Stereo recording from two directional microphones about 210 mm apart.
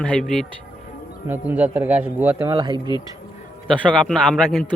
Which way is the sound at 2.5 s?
20° right (ahead or behind).